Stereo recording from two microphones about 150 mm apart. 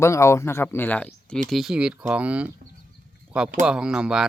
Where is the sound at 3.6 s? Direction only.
5° right (ahead or behind).